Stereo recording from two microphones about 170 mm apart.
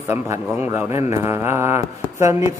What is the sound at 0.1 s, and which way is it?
A man's voice, 15° right (ahead or behind).